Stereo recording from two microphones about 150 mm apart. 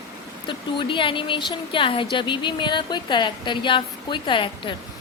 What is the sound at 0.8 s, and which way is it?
Speech, 35° left (ahead or behind).